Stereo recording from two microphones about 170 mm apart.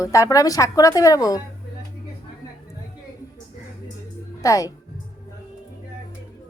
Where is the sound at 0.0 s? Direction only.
20° left (ahead or behind).